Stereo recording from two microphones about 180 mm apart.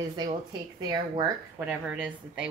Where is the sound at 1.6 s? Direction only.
5° right (ahead or behind).